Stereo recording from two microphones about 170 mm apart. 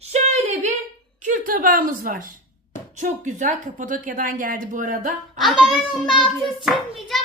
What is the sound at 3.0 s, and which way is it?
Speech, 45° right (ahead or behind).